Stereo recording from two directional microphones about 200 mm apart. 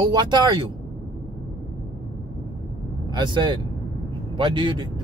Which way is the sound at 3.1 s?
20° right (ahead or behind).